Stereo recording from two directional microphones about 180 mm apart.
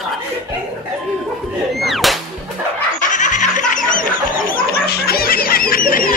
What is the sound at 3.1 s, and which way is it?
Snicker, 45° left (ahead or behind).